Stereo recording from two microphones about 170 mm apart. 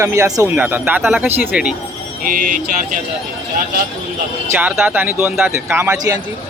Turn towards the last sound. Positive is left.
turn(degrees=-20)  # may be behind; listen again after turning